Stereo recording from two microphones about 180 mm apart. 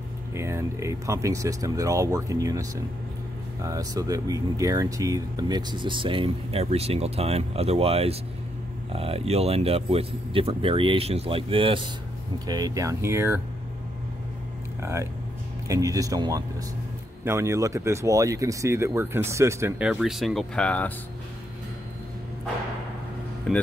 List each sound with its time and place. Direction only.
0.3 s speech: 15° right (ahead or behind)
14.8 s speech: 15° right (ahead or behind); by 20.9 s 5° left (ahead or behind)